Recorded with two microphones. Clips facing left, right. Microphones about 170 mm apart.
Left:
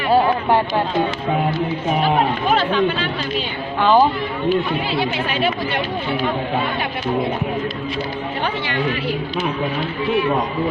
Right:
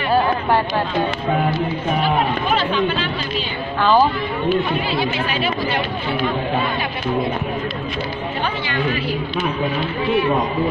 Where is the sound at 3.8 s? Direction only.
20° left (ahead or behind).